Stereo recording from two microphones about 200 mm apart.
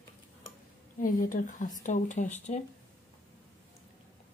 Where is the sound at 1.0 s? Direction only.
40° left (ahead or behind).